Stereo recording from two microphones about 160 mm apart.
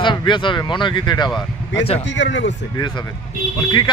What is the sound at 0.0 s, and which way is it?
Speech, 30° left (ahead or behind).